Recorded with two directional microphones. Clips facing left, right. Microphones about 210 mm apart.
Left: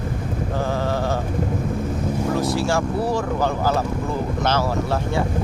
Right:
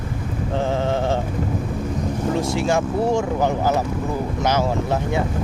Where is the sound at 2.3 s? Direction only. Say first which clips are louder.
Right 2 dB; 20° right (ahead or behind).